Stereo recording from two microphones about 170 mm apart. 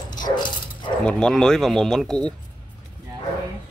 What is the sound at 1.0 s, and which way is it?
Speech, 5° left (ahead or behind).